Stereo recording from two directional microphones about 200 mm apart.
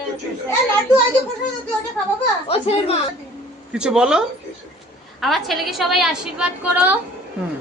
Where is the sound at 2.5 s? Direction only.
30° left (ahead or behind).